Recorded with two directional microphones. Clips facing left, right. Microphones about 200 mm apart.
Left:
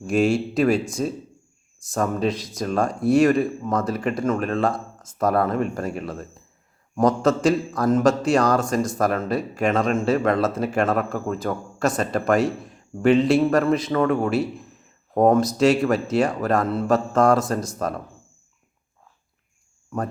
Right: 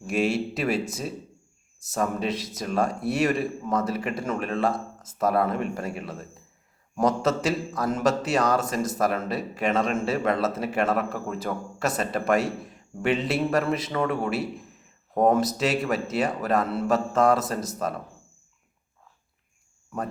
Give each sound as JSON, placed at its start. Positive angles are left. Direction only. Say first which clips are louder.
{"t": 0.1, "sound": "speech", "louder": "left 5 dB", "side_deg": -5}
{"t": 5.3, "sound": "speech", "louder": "left 3 dB", "side_deg": 50}
{"t": 5.9, "sound": "speech", "louder": "left 5 dB", "side_deg": -5}